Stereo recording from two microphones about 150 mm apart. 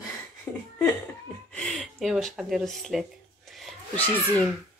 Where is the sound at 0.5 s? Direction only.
20° left (ahead or behind).